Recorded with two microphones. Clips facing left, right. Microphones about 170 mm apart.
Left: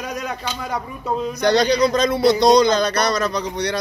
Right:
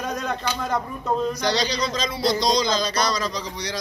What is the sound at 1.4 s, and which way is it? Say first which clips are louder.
Speech: left 8 dB; 55° left (ahead or behind).